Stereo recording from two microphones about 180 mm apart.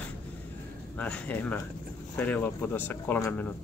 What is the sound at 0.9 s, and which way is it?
Speech, 5° left (ahead or behind).